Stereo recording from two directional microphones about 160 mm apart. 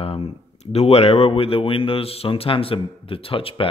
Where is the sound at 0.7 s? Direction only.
40° left (ahead or behind).